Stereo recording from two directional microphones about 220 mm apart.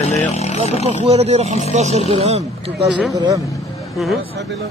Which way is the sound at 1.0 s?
30° right (ahead or behind).